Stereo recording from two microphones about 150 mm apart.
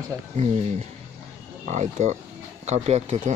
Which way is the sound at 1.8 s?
50° right (ahead or behind).